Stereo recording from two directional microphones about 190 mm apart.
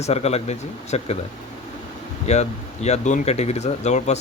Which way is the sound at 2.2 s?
35° left (ahead or behind).